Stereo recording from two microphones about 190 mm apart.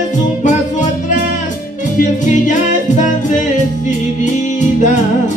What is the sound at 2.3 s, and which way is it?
Music, 40° left (ahead or behind).